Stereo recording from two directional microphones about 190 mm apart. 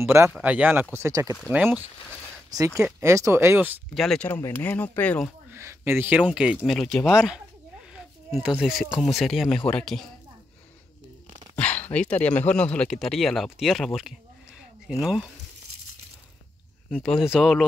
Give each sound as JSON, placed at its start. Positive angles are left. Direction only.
{"t": 0.0, "sound": "speech", "side_deg": -15}
{"t": 5.5, "sound": "speech", "side_deg": -15}
{"t": 7.9, "sound": "a sound", "side_deg": -5}
{"t": 9.0, "sound": "speech", "side_deg": 0}
{"t": 11.5, "sound": "speech", "side_deg": 10}
{"t": 17.1, "sound": "speech", "side_deg": 0}